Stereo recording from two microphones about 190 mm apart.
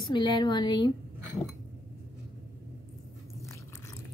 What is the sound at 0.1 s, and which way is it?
Speech, 25° left (ahead or behind).